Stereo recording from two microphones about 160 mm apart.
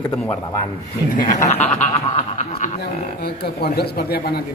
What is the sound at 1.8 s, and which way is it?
Snicker, 45° left (ahead or behind).